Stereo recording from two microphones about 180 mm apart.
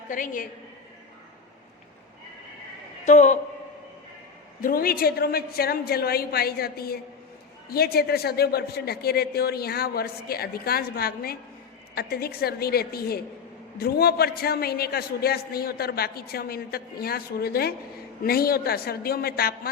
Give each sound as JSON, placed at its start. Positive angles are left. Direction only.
{"t": 0.1, "sound": "a woman's voice", "side_deg": 45}
{"t": 3.0, "sound": "a woman's voice", "side_deg": 40}
{"t": 4.6, "sound": "a man's voice", "side_deg": 55}